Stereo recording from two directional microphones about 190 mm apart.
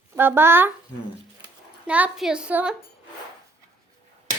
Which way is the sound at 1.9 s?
5° right (ahead or behind).